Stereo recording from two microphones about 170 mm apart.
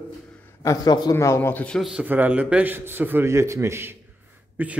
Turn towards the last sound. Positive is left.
turn(degrees=-10)  # may be behind; listen again after turning